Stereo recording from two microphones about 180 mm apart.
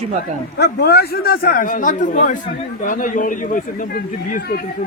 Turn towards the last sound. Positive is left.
turn(degrees=50)  # may be behind; listen again after turning